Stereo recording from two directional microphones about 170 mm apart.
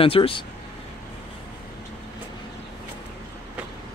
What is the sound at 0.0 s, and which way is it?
Speech, 30° left (ahead or behind).